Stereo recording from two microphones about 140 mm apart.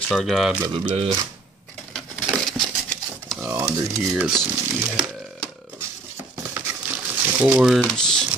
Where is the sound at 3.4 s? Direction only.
20° right (ahead or behind).